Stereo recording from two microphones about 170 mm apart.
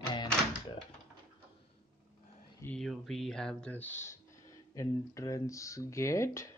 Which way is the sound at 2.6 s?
5° left (ahead or behind).